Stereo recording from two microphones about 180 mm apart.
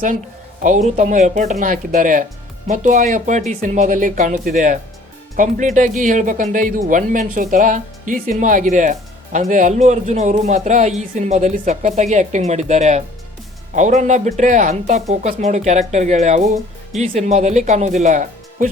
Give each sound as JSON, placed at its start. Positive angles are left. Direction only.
{"t": 0.6, "sound": "speech", "side_deg": -45}